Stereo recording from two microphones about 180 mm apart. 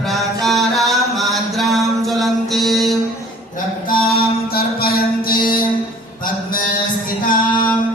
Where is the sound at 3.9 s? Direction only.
55° left (ahead or behind).